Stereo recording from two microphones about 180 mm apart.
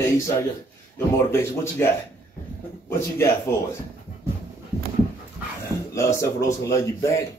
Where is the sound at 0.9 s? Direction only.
15° left (ahead or behind).